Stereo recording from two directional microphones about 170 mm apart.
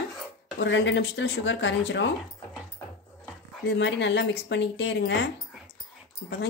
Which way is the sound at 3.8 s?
90° left.